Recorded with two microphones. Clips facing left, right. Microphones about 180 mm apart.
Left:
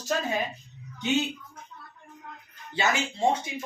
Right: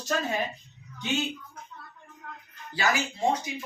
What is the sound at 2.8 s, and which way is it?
Speech, 25° left (ahead or behind).